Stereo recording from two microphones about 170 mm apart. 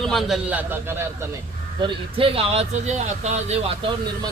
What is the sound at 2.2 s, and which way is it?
A man's voice, 35° right (ahead or behind).